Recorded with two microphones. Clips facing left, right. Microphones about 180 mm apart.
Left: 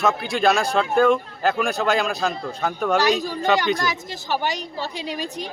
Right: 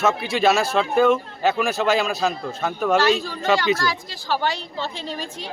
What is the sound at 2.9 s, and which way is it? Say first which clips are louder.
A woman's voice: right 1 dB; 15° left (ahead or behind).